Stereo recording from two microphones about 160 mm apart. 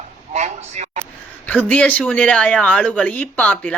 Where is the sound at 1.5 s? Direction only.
10° left (ahead or behind).